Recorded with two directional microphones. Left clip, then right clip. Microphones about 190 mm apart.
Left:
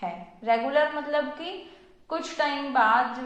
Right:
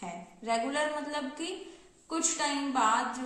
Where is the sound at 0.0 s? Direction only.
15° right (ahead or behind).